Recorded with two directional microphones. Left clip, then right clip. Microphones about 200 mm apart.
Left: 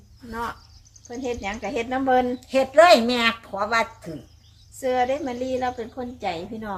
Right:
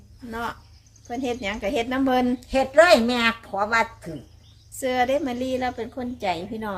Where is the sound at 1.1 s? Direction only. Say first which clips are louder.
Right 1 dB; 55° right (ahead or behind).